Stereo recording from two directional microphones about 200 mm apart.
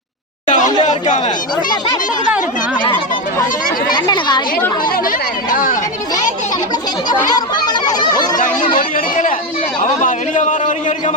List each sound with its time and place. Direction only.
0.4 s a sound: 35° left (ahead or behind)
2.8 s a sound: 25° left (ahead or behind)
3.9 s a woman's voice: 20° left (ahead or behind)
4.9 s chatter: 45° left (ahead or behind)
7.1 s speech: 20° left (ahead or behind)
8.4 s a man's voice: 40° left (ahead or behind)